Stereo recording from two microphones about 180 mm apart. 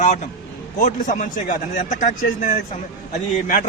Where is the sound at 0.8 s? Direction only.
45° left (ahead or behind).